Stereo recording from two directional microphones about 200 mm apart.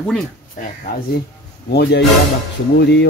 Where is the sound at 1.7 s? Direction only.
55° left (ahead or behind).